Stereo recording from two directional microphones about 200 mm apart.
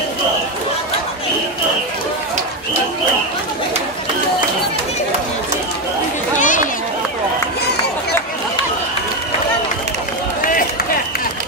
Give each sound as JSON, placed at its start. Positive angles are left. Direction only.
{"t": 6.4, "sound": "run", "side_deg": 40}